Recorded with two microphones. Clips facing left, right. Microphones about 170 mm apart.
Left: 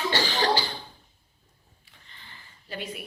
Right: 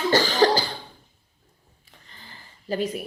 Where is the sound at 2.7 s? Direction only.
40° right (ahead or behind).